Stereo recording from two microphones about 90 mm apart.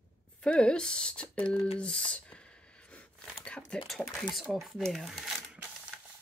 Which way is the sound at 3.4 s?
15° left (ahead or behind).